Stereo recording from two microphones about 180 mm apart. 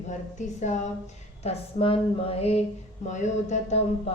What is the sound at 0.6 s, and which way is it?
Speech, 40° left (ahead or behind).